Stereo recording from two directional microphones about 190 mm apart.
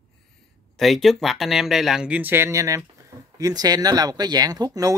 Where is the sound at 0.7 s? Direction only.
Centre (ahead or behind); by 5.0 s 20° right (ahead or behind).